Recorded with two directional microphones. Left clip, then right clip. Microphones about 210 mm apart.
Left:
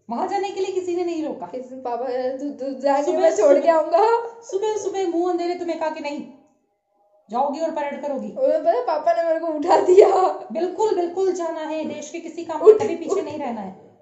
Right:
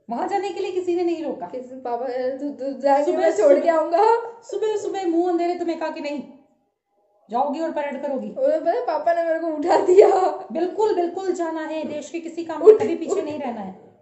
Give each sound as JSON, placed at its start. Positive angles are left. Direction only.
{"t": 0.1, "sound": "a sound", "side_deg": -15}
{"t": 1.5, "sound": "a woman's voice", "side_deg": 5}
{"t": 4.5, "sound": "a woman's voice", "side_deg": -15}
{"t": 7.3, "sound": "a woman's voice", "side_deg": -15}
{"t": 8.4, "sound": "a woman's voice", "side_deg": 0}
{"t": 10.5, "sound": "a woman's voice", "side_deg": -15}